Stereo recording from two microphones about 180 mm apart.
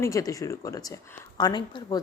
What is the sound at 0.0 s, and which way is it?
Speech, 20° left (ahead or behind).